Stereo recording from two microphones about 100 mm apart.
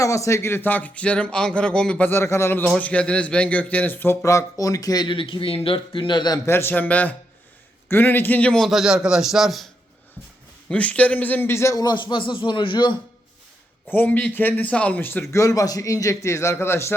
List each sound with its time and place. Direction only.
0.0 s a man's voice: 30° left (ahead or behind); by 2.0 s 10° left (ahead or behind)
2.0 s a man's voice: 25° left (ahead or behind)
2.6 s a man's voice: 10° left (ahead or behind); by 5.1 s 40° left (ahead or behind)
5.1 s a man's voice: 60° left (ahead or behind)
6.4 s a man's voice: 25° left (ahead or behind); by 9.6 s centre (ahead or behind)
10.7 s a man's voice: 15° left (ahead or behind); by 13.0 s 50° left (ahead or behind)
13.9 s a man's voice: 15° left (ahead or behind)
15.3 s a man's voice: 30° left (ahead or behind)